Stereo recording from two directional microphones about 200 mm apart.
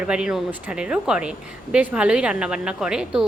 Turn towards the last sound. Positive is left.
turn(degrees=-5)  # may be behind; listen again after turning